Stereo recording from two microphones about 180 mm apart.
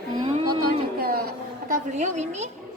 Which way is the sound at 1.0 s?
55° right (ahead or behind).